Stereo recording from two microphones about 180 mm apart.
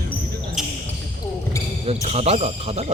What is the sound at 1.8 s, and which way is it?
Speech, 35° right (ahead or behind).